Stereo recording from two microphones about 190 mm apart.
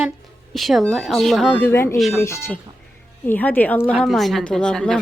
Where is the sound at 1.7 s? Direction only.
15° left (ahead or behind).